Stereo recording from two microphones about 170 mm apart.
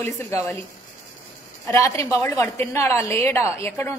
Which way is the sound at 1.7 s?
15° left (ahead or behind).